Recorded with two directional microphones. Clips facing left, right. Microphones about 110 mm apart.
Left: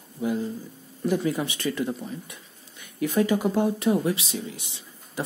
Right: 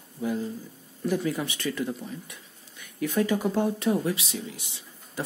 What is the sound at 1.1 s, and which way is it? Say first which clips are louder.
Speech: left 2 dB; 20° left (ahead or behind).